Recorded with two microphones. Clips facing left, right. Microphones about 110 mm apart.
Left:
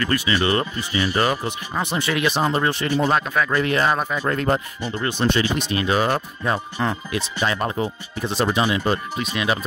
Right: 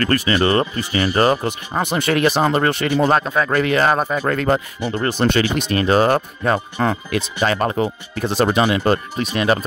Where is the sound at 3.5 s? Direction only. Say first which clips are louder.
Right 4 dB; 80° right.